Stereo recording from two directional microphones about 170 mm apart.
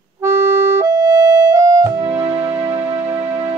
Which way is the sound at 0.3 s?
15° right (ahead or behind).